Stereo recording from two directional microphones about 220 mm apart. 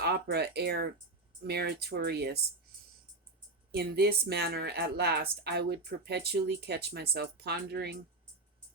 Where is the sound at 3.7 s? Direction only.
45° right (ahead or behind).